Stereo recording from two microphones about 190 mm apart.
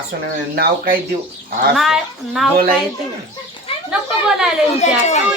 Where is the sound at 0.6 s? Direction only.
50° right (ahead or behind).